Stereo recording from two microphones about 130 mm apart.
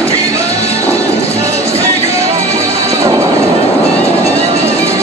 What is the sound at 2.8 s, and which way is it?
Music, 25° right (ahead or behind).